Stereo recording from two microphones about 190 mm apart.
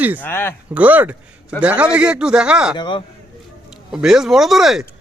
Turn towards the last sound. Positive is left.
turn(degrees=0)  # may be behind; listen again after turning